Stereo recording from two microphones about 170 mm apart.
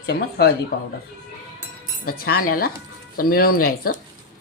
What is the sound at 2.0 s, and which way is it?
Speech, 60° left (ahead or behind).